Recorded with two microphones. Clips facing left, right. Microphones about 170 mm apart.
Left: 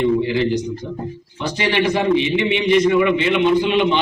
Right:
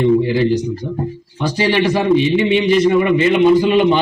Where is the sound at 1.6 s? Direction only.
35° right (ahead or behind).